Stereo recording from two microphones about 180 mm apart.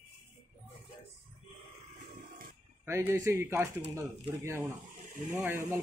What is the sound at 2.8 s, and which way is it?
Speech, 15° right (ahead or behind).